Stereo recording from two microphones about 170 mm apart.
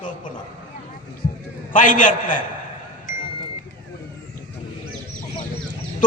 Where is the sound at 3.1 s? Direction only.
55° left (ahead or behind).